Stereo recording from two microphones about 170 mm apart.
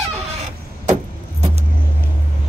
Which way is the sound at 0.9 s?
40° right (ahead or behind).